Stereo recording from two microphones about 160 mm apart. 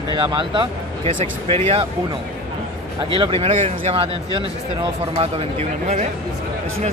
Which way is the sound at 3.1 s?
35° right (ahead or behind).